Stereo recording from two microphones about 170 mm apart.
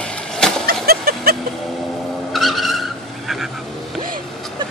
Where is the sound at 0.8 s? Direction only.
65° right (ahead or behind).